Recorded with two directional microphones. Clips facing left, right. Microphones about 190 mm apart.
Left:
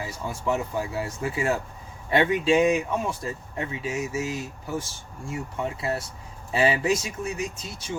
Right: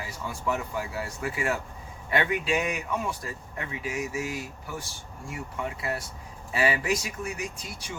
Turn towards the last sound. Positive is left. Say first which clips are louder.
# left 5 dB
turn(degrees=25)  # may be behind; listen again after turning